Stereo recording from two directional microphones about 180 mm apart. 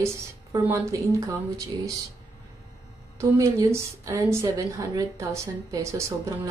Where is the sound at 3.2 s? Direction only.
15° right (ahead or behind).